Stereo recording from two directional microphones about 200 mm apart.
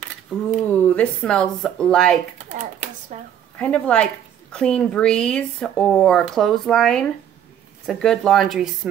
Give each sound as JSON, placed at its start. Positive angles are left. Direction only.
{"t": 0.3, "sound": "a woman's voice", "side_deg": 5}
{"t": 2.5, "sound": "a sound", "side_deg": -35}
{"t": 3.5, "sound": "a woman's voice", "side_deg": 5}